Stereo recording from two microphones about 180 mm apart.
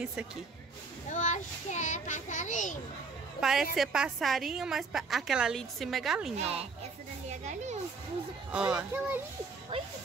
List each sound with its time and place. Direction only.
0.0 s speech: 5° right (ahead or behind)
1.1 s a child's voice: 40° left (ahead or behind)
3.3 s a woman's voice: centre (ahead or behind)
6.3 s a child's voice: 35° right (ahead or behind)
8.5 s speech: 5° right (ahead or behind)